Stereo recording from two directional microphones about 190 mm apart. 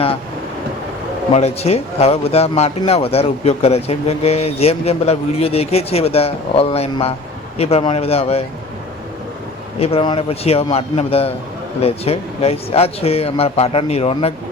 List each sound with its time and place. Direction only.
1.4 s speech: 35° left (ahead or behind)
9.7 s speech: 30° left (ahead or behind)